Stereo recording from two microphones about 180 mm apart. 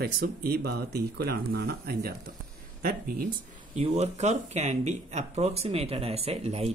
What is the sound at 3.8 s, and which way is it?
Speech, 35° right (ahead or behind).